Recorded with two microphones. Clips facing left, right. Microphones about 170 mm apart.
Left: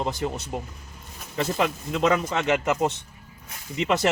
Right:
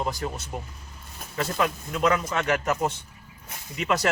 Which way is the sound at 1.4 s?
20° left (ahead or behind).